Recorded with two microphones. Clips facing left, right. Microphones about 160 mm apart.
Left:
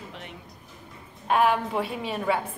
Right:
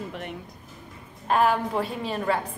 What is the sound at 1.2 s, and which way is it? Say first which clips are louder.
A woman's voice: even; centre (ahead or behind).